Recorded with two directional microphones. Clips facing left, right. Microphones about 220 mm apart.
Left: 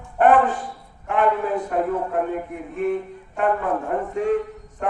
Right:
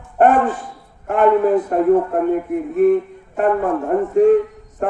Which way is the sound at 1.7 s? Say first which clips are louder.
Right 5 dB; 40° right (ahead or behind).